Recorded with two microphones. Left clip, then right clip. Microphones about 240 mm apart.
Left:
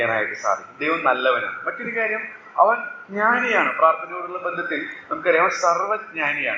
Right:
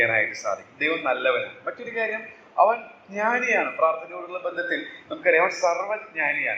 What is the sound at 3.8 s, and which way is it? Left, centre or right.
A man's voice, right.